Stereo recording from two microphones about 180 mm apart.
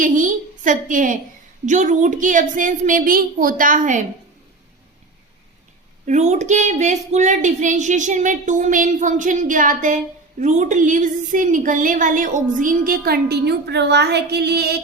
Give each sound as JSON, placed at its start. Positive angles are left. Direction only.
{"t": 0.0, "sound": "a woman's voice", "side_deg": -45}
{"t": 6.1, "sound": "speech", "side_deg": -40}